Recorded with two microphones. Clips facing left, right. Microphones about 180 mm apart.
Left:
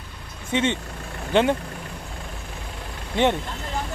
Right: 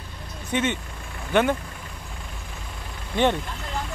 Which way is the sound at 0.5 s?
25° left (ahead or behind).